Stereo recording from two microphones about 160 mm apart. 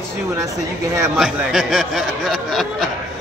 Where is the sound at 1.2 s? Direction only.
5° right (ahead or behind).